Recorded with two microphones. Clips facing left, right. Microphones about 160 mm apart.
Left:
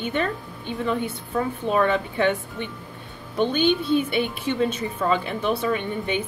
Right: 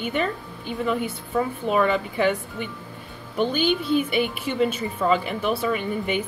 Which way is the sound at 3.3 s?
5° right (ahead or behind).